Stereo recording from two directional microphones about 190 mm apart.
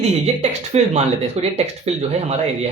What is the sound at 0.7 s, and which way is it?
Speech, 35° right (ahead or behind).